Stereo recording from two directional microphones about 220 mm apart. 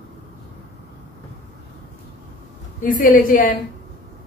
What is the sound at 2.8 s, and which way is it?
Speech, 40° left (ahead or behind).